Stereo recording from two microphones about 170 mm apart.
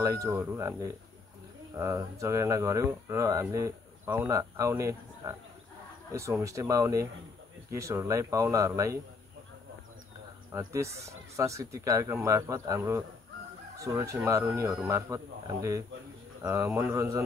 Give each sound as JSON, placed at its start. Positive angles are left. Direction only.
{"t": 0.0, "sound": "speech", "side_deg": -20}
{"t": 10.6, "sound": "speech", "side_deg": -15}